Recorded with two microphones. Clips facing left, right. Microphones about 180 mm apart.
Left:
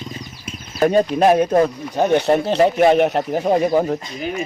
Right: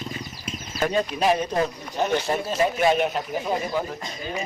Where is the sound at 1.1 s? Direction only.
55° left (ahead or behind).